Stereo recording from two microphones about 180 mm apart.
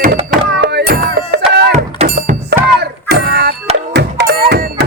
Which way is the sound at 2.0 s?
60° right (ahead or behind).